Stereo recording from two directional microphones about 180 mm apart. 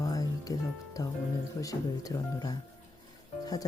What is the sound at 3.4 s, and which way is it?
Music, 20° left (ahead or behind).